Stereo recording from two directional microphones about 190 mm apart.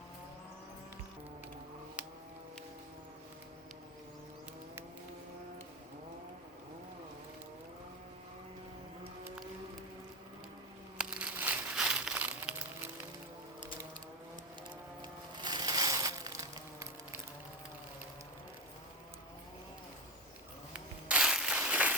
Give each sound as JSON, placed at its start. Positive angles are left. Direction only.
{"t": 10.9, "sound": "crumpling", "side_deg": -5}
{"t": 15.4, "sound": "crushing", "side_deg": -20}
{"t": 20.7, "sound": "a sound", "side_deg": -5}